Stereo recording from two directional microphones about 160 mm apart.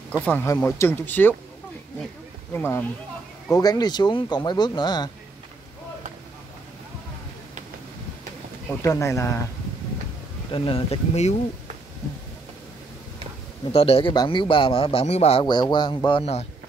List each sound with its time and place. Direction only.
0.2 s speech: 10° left (ahead or behind)
2.5 s speech: 15° left (ahead or behind)
8.6 s speech: 15° left (ahead or behind)
10.5 s a man's voice: 35° left (ahead or behind)
13.7 s a man's voice: 35° left (ahead or behind)
15.4 s speech: 30° left (ahead or behind)